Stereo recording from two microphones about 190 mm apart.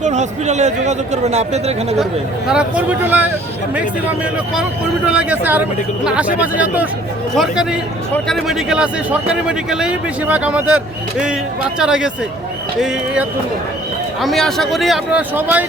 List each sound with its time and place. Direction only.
0.0 s a man's voice: 40° right (ahead or behind)
2.5 s speech: 5° right (ahead or behind)
5.0 s a man's voice: 5° right (ahead or behind)
11.8 s a man's voice: 5° right (ahead or behind)
14.2 s a man's voice: centre (ahead or behind)